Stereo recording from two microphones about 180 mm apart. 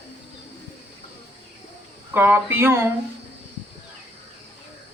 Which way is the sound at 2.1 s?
10° right (ahead or behind).